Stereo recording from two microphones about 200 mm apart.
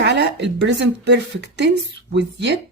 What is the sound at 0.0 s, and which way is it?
A woman's voice, 60° right (ahead or behind).